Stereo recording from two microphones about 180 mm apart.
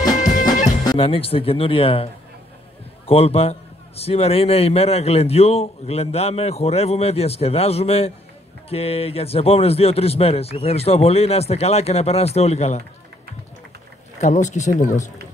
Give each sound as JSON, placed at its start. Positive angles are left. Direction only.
{"t": 0.1, "sound": "music", "side_deg": 45}
{"t": 0.9, "sound": "a man's voice", "side_deg": 30}
{"t": 3.1, "sound": "a man's voice", "side_deg": 35}
{"t": 14.1, "sound": "a man's voice", "side_deg": 40}